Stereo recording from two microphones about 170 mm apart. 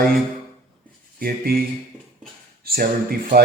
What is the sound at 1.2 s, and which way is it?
Speech, 60° right (ahead or behind).